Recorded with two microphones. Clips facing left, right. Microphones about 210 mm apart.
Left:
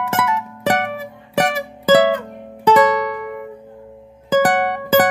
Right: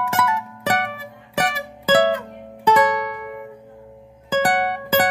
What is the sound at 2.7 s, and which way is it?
Music, 90° left.